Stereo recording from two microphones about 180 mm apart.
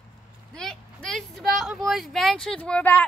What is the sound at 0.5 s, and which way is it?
Speech, 5° left (ahead or behind).